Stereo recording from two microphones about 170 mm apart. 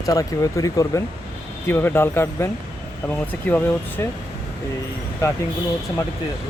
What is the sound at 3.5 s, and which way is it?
Speech, 10° left (ahead or behind).